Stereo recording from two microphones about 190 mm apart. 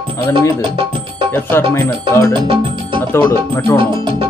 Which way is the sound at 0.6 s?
25° right (ahead or behind).